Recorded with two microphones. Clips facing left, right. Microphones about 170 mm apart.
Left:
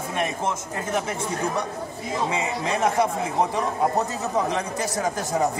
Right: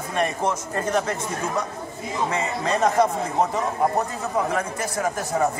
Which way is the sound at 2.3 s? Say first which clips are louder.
Right 1 dB; 10° left (ahead or behind).